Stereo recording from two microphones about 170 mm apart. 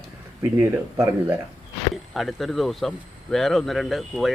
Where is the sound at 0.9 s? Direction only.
15° right (ahead or behind).